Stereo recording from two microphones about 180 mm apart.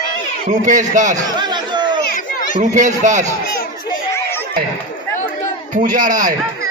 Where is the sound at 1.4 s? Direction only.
25° right (ahead or behind).